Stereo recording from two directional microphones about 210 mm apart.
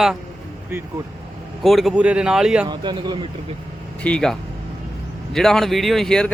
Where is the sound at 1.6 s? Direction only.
Centre (ahead or behind).